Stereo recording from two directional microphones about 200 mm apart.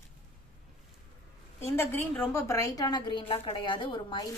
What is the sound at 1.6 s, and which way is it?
A woman's voice, 10° left (ahead or behind).